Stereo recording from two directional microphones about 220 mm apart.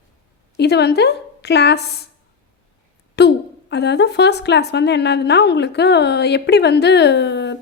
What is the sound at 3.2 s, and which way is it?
A woman's voice, 50° left (ahead or behind).